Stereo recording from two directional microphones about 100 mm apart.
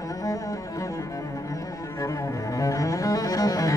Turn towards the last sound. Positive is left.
turn(degrees=40)  # may be behind; listen again after turning